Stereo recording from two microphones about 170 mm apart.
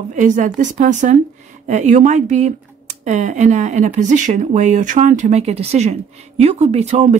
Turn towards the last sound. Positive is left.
turn(degrees=-40)  # may be behind; listen again after turning